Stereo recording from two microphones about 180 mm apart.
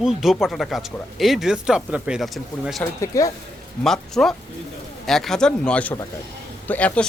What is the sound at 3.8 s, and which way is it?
Speech, centre (ahead or behind).